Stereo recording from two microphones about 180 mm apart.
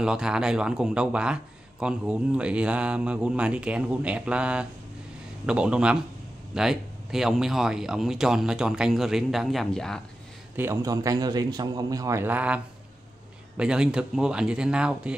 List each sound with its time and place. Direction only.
0.0 s a man's voice: 5° right (ahead or behind)
10.5 s a man's voice: 15° right (ahead or behind)